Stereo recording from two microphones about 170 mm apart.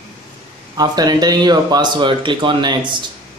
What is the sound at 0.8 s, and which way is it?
Speech, 25° right (ahead or behind).